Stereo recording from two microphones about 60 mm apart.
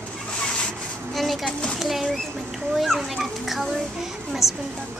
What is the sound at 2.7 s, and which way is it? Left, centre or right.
Children playing, centre.